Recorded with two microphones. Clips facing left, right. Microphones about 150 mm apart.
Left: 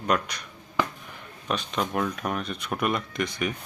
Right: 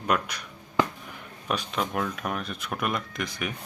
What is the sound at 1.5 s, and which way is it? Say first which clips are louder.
Speech: left 1 dB; 5° right (ahead or behind).